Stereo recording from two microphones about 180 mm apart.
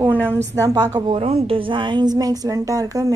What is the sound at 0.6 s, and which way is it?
Speech, 20° right (ahead or behind).